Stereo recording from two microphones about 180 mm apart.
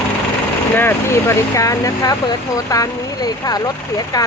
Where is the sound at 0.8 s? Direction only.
15° left (ahead or behind).